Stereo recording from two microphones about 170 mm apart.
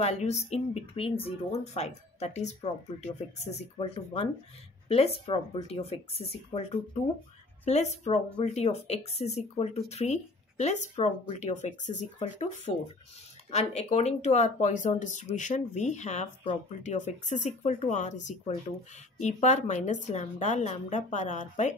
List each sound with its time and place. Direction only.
0.0 s speech: 40° left (ahead or behind)
19.1 s speech: 45° left (ahead or behind)